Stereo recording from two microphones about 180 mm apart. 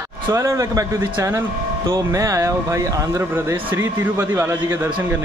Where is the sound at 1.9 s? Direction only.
15° right (ahead or behind).